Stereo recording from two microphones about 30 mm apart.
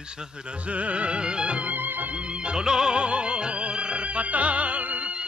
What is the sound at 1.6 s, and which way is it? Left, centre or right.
Music, right.